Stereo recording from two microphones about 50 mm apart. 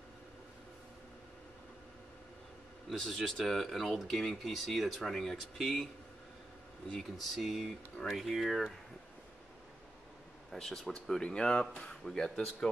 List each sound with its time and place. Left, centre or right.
3.0 s speech: centre
7.0 s speech: centre
10.5 s speech: centre